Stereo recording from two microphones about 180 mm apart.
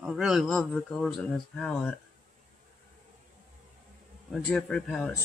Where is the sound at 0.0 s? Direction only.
5° right (ahead or behind).